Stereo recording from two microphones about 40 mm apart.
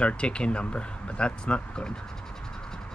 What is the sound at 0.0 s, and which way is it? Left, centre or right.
Speech, left.